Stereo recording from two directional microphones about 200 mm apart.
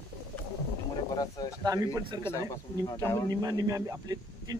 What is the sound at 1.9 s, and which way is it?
Speech, 20° right (ahead or behind).